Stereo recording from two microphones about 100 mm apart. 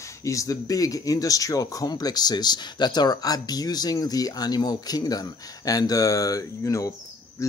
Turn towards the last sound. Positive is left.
turn(degrees=30)  # may be behind; listen again after turning